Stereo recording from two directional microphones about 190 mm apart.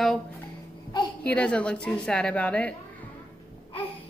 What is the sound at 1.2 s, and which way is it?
A woman's voice, 5° left (ahead or behind).